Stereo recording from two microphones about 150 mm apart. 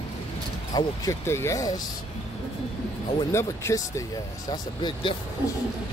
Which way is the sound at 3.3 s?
20° left (ahead or behind).